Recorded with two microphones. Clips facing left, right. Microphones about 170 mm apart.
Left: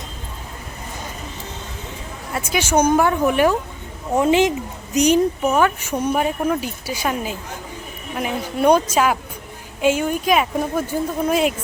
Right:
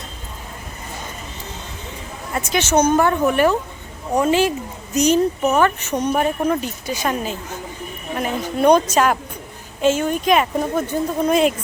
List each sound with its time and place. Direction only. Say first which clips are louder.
2.3 s speech: right 1 dB; 10° left (ahead or behind)